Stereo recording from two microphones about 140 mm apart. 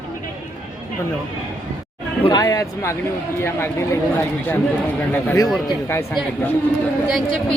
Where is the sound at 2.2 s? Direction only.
30° left (ahead or behind).